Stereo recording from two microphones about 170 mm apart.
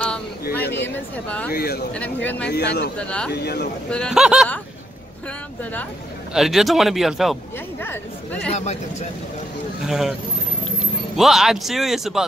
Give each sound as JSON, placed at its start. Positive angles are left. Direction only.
{"t": 0.0, "sound": "a sound", "side_deg": 10}
{"t": 0.8, "sound": "a woman's voice", "side_deg": 10}
{"t": 1.5, "sound": "speech", "side_deg": 65}
{"t": 2.2, "sound": "speech", "side_deg": 10}
{"t": 2.5, "sound": "a man's voice", "side_deg": 85}
{"t": 3.0, "sound": "speech", "side_deg": 5}
{"t": 3.3, "sound": "speech", "side_deg": 70}
{"t": 3.9, "sound": "speech", "side_deg": 0}
{"t": 5.6, "sound": "speech", "side_deg": 10}
{"t": 6.3, "sound": "speech", "side_deg": 0}
{"t": 7.8, "sound": "speech", "side_deg": 10}
{"t": 9.8, "sound": "speech", "side_deg": 0}
{"t": 11.1, "sound": "speech", "side_deg": 0}